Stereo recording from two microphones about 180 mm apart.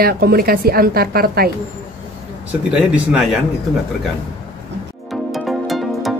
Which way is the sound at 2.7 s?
5° right (ahead or behind).